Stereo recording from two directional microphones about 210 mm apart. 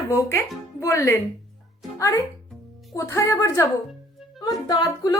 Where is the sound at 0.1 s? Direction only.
15° left (ahead or behind).